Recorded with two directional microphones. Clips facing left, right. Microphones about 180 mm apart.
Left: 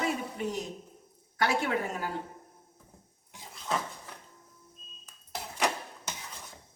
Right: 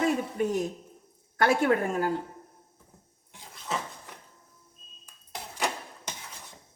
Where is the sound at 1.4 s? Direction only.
50° right (ahead or behind).